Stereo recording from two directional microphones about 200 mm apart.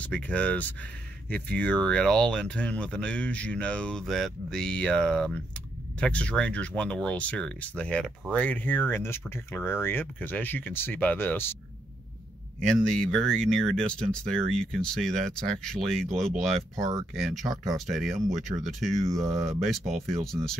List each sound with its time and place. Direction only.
0.0 s speech: 5° left (ahead or behind)
12.6 s speech: centre (ahead or behind)
16.7 s speech: 15° right (ahead or behind)
17.7 s speech: centre (ahead or behind)